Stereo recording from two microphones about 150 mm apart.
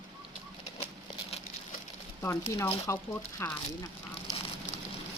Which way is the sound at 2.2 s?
20° left (ahead or behind).